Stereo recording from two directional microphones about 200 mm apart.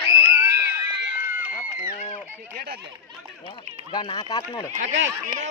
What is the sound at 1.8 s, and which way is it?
Speech, 35° left (ahead or behind).